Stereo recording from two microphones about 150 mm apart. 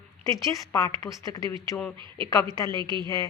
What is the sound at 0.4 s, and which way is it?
A woman's voice, 25° left (ahead or behind).